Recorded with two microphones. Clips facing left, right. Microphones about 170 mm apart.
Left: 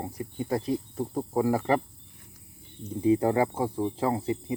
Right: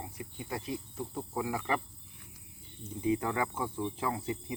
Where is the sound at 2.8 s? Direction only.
35° left (ahead or behind).